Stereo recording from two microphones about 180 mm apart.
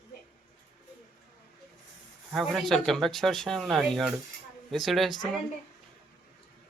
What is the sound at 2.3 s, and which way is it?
Speech, centre (ahead or behind).